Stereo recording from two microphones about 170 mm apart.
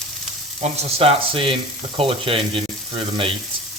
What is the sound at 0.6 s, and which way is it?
Speech, 35° right (ahead or behind).